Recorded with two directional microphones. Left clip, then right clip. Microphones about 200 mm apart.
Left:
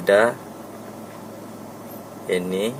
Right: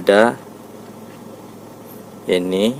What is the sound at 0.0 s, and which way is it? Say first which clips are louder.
Speech: right 4 dB; 55° right (ahead or behind).